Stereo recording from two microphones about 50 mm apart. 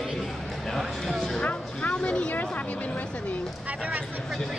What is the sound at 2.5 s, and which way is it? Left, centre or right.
Speech, left.